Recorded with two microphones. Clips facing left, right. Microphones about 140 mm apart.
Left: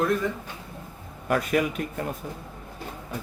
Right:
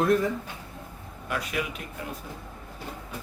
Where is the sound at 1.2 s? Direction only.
45° left (ahead or behind).